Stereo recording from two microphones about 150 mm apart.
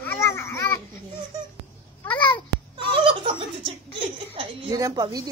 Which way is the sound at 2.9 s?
35° right (ahead or behind).